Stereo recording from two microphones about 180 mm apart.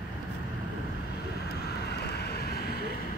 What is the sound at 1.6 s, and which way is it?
Vehicle, 65° left (ahead or behind).